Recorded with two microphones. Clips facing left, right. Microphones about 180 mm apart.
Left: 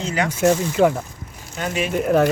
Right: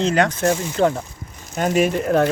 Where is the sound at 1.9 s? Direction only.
5° left (ahead or behind).